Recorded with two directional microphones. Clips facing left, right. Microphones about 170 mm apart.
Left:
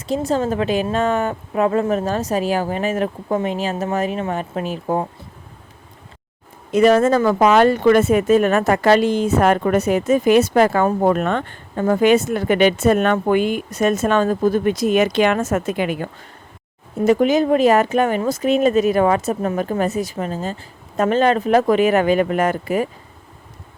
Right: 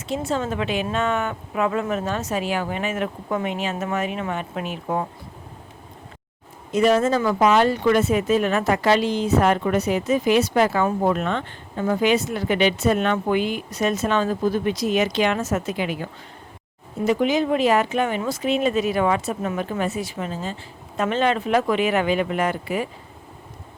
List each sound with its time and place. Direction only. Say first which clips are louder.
0.1 s a woman's voice: left 5 dB; 35° left (ahead or behind)
6.7 s speech: left 5 dB; 55° left (ahead or behind)